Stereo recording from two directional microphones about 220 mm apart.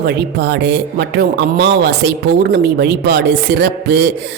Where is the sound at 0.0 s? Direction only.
45° right (ahead or behind).